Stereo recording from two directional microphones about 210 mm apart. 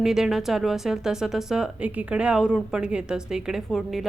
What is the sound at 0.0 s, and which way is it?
Speech, centre (ahead or behind).